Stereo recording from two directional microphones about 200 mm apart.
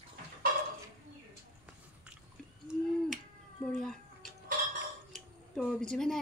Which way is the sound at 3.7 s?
Centre (ahead or behind).